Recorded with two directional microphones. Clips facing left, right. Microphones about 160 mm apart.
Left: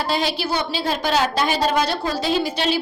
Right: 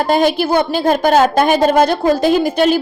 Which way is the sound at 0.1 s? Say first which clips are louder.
Right 11 dB; 50° right (ahead or behind).